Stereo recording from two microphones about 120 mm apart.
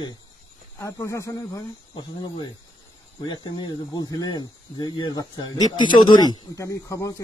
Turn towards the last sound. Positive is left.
turn(degrees=25)  # may be behind; listen again after turning